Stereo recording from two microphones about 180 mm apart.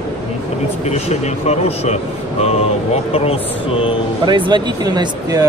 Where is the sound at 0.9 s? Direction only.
35° left (ahead or behind).